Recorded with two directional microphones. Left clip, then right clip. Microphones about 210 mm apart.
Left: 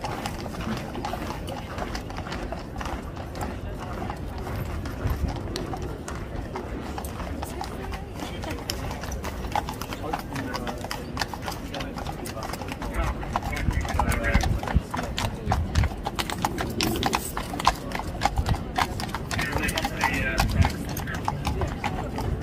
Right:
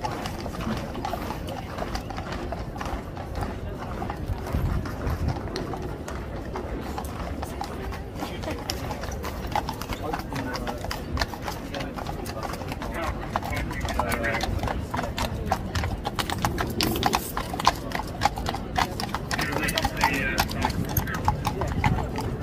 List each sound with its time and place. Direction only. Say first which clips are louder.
10.1 s horse: even; 20° left (ahead or behind)
13.8 s clip-clop: even; 5° left (ahead or behind); by 22.2 s 30° right (ahead or behind)